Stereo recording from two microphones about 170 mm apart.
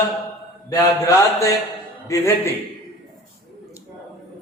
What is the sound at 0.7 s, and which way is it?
A man's voice, 20° left (ahead or behind).